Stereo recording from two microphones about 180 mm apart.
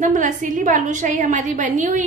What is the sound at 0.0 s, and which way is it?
A woman's voice, 45° right (ahead or behind).